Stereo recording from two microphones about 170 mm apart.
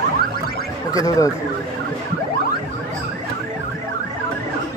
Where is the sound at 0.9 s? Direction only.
20° left (ahead or behind).